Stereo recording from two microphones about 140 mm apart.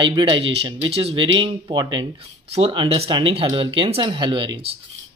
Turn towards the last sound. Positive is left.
turn(degrees=-35)  # may be behind; listen again after turning